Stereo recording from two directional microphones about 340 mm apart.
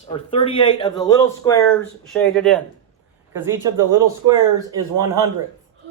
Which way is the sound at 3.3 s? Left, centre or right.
Centre.